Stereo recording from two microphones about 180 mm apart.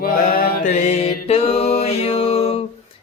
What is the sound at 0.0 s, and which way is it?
Mantra, 50° left (ahead or behind).